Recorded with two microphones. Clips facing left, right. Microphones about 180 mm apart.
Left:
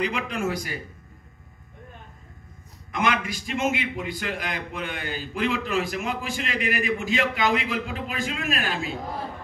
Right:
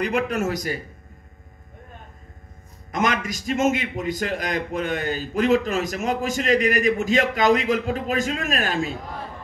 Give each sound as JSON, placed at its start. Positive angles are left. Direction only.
{"t": 0.0, "sound": "a man's voice", "side_deg": -45}
{"t": 2.9, "sound": "a man's voice", "side_deg": -40}